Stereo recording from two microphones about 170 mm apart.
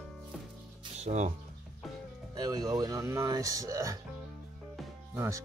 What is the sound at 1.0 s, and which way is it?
Speech, 40° right (ahead or behind).